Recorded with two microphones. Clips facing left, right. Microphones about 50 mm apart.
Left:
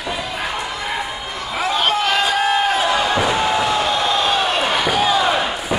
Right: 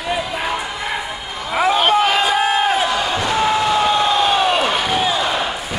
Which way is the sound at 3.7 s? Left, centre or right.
Centre.